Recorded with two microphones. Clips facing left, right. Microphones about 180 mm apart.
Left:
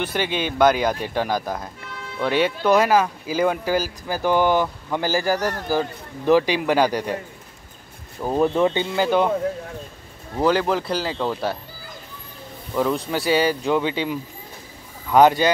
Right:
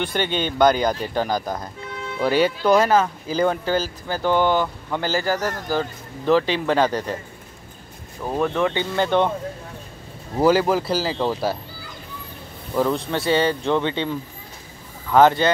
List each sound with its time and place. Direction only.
0.0 s speech: 5° left (ahead or behind)
8.4 s speech: 25° left (ahead or behind)
8.9 s speech: 5° left (ahead or behind)
10.4 s speech: 5° right (ahead or behind)
12.7 s speech: 5° left (ahead or behind)